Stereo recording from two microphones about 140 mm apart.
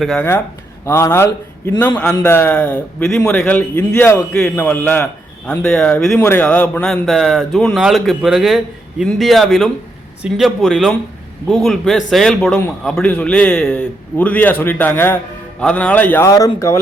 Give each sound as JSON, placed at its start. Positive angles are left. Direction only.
{"t": 0.0, "sound": "a man's voice", "side_deg": 5}
{"t": 0.9, "sound": "a man's voice", "side_deg": 20}